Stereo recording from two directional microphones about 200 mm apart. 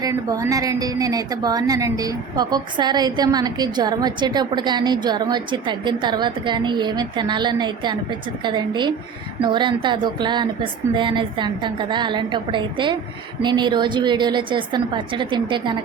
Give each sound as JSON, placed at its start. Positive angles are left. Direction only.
{"t": 0.0, "sound": "a woman's voice", "side_deg": -15}